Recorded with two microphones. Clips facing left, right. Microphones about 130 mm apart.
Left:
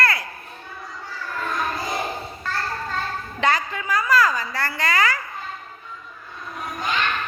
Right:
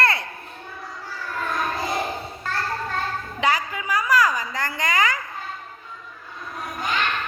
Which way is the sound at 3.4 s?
10° right (ahead or behind).